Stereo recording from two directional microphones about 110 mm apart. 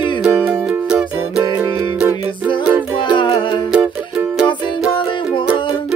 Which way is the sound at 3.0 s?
45° left (ahead or behind).